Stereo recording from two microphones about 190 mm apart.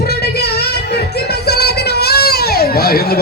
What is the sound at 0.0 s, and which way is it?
Music, 55° left (ahead or behind).